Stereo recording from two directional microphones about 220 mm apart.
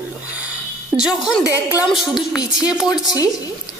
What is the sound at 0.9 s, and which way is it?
Speech, centre (ahead or behind).